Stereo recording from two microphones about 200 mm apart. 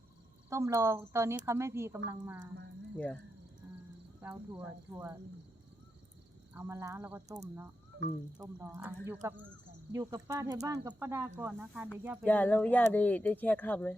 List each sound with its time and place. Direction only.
0.5 s speech: 15° right (ahead or behind)
4.2 s speech: 10° right (ahead or behind)
6.5 s speech: 10° right (ahead or behind)
8.5 s speech: 10° right (ahead or behind)
12.2 s speech: 10° left (ahead or behind)